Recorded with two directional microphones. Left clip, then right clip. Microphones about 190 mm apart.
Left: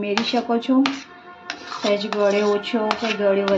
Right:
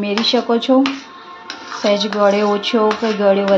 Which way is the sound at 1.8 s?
15° right (ahead or behind).